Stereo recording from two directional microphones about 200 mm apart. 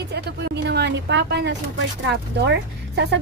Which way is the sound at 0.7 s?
60° right (ahead or behind).